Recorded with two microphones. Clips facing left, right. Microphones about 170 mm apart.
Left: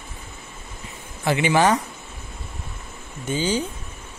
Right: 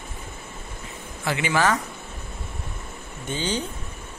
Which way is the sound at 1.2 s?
20° left (ahead or behind).